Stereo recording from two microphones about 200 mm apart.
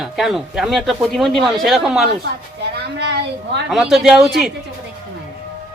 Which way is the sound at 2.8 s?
55° right (ahead or behind).